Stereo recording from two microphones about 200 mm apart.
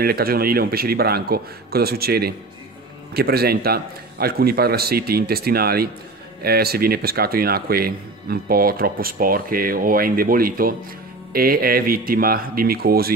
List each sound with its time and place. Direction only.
0.0 s speech: 50° right (ahead or behind)